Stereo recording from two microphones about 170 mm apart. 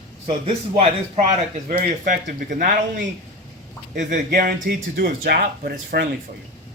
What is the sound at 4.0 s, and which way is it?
Speech, 50° right (ahead or behind).